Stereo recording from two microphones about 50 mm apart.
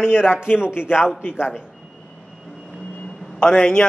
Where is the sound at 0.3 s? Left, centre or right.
Centre.